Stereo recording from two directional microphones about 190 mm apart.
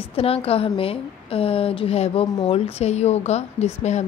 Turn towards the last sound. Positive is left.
turn(degrees=35)  # may be behind; listen again after turning